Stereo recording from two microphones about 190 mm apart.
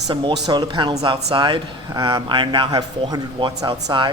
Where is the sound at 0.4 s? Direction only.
25° right (ahead or behind).